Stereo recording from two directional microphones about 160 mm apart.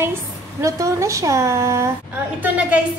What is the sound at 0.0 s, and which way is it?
A woman's voice, 15° right (ahead or behind).